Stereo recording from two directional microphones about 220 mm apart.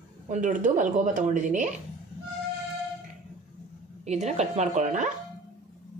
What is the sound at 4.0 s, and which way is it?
Speech, 30° right (ahead or behind).